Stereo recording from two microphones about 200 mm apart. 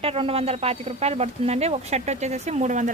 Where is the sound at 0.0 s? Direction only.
30° right (ahead or behind).